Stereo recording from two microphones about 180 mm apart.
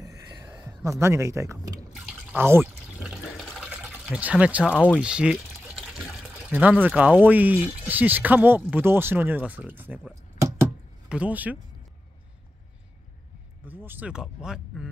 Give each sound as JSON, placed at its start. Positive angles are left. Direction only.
{"t": 0.0, "sound": "a sound", "side_deg": -20}
{"t": 2.0, "sound": "water", "side_deg": -10}
{"t": 3.4, "sound": "water", "side_deg": 0}
{"t": 4.7, "sound": "speech", "side_deg": 10}
{"t": 5.0, "sound": "pour", "side_deg": -5}
{"t": 6.3, "sound": "speech", "side_deg": -10}
{"t": 13.7, "sound": "speech", "side_deg": -10}